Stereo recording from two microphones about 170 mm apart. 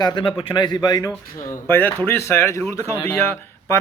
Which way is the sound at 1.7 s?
10° left (ahead or behind).